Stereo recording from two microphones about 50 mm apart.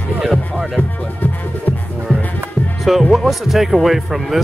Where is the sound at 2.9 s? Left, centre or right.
Centre.